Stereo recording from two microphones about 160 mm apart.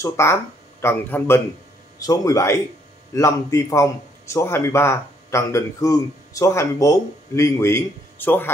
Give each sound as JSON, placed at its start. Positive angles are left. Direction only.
{"t": 0.0, "sound": "a man's voice", "side_deg": 15}